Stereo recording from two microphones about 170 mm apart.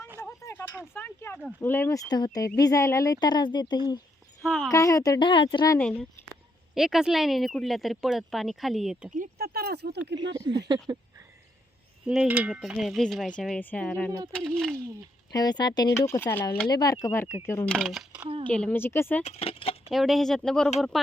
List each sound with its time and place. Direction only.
0.2 s speech: 15° left (ahead or behind)
4.4 s speech: centre (ahead or behind)
4.7 s speech: 20° left (ahead or behind)
5.8 s speech: 5° left (ahead or behind)
9.1 s speech: 60° right (ahead or behind); by 10.2 s 75° right (ahead or behind)
12.0 s speech: 5° right (ahead or behind)
15.3 s speech: 25° left (ahead or behind); by 18.3 s 5° right (ahead or behind)
18.4 s speech: 5° left (ahead or behind)
19.2 s speech: 35° left (ahead or behind)
19.9 s speech: centre (ahead or behind)